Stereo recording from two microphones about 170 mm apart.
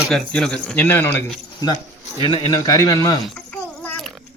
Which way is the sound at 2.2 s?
30° left (ahead or behind).